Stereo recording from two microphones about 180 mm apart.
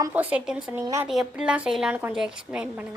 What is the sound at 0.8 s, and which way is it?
Speech, 15° right (ahead or behind).